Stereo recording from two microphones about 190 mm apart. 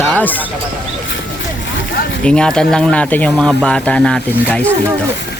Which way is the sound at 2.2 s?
5° left (ahead or behind).